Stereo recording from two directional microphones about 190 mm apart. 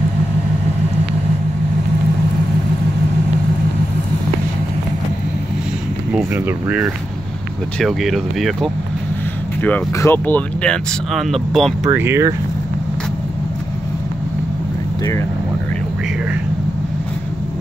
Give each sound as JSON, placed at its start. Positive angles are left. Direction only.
{"t": 6.1, "sound": "speech", "side_deg": -10}
{"t": 11.9, "sound": "speech", "side_deg": -15}